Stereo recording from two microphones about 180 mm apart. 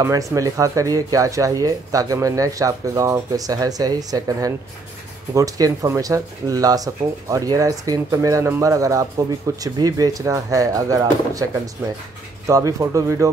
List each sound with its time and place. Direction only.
0.0 s speech: 15° right (ahead or behind)